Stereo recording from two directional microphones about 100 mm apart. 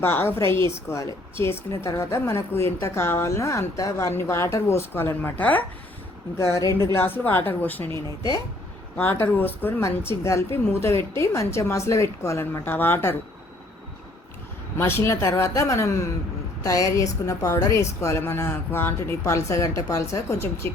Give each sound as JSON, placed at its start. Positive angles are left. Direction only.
{"t": 0.0, "sound": "a woman's voice", "side_deg": 20}
{"t": 6.6, "sound": "a woman's voice", "side_deg": 30}
{"t": 9.0, "sound": "a woman's voice", "side_deg": 20}
{"t": 14.8, "sound": "a woman's voice", "side_deg": 25}